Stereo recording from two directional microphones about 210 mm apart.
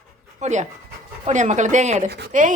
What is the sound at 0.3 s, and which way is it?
Speech, 35° right (ahead or behind).